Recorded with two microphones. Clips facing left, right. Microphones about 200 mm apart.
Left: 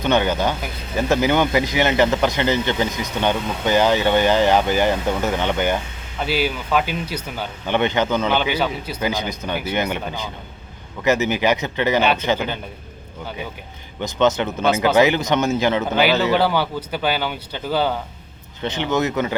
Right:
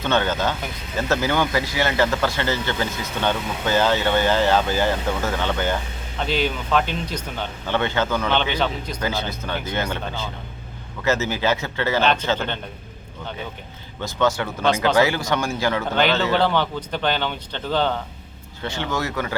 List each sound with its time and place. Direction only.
0.0 s speech: 15° left (ahead or behind)
8.4 s speech: 10° left (ahead or behind)
14.0 s speech: 20° left (ahead or behind)
18.6 s speech: 20° left (ahead or behind)